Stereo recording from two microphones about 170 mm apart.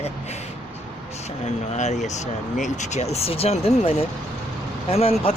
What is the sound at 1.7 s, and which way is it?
Speech, 45° left (ahead or behind).